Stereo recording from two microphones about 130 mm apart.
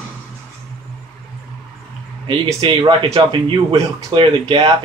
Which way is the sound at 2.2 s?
40° right (ahead or behind).